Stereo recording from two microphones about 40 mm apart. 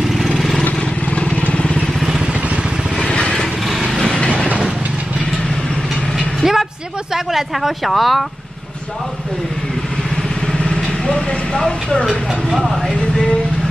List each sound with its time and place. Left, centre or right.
0.0 s vehicle: centre
0.7 s vehicle: left
3.1 s vehicle: left
3.9 s train: left
6.4 s vehicle: centre
7.2 s speech: centre
10.6 s vehicle: left
11.1 s speech: centre